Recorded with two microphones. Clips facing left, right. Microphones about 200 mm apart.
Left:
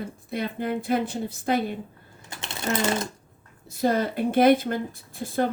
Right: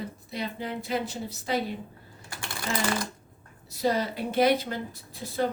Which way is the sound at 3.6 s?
50° left (ahead or behind).